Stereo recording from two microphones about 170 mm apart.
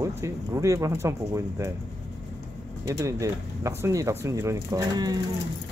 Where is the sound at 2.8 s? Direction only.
20° right (ahead or behind).